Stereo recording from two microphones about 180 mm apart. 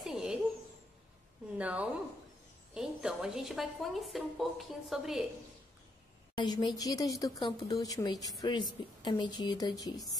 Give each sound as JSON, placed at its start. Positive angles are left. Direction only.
{"t": 0.0, "sound": "a sound", "side_deg": 0}
{"t": 1.6, "sound": "a woman's voice", "side_deg": -5}
{"t": 6.3, "sound": "a woman's voice", "side_deg": 25}